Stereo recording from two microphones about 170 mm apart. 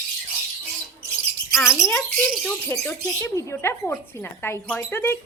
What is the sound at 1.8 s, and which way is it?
Speech, 10° left (ahead or behind).